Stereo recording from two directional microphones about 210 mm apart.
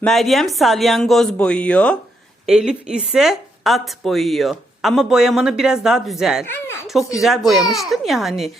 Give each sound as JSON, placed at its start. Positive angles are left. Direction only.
{"t": 0.0, "sound": "a woman's voice", "side_deg": 0}
{"t": 6.4, "sound": "speech", "side_deg": 10}
{"t": 6.8, "sound": "a woman's voice", "side_deg": 0}